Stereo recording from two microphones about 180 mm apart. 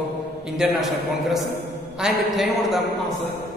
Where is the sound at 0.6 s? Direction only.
Centre (ahead or behind).